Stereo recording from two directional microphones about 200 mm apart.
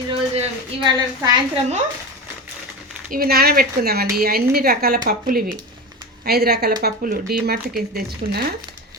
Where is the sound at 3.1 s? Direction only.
50° right (ahead or behind).